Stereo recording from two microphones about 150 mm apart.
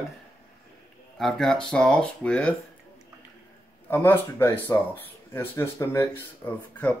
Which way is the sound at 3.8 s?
15° left (ahead or behind).